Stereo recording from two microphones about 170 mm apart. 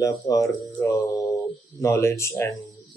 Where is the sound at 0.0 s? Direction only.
20° left (ahead or behind).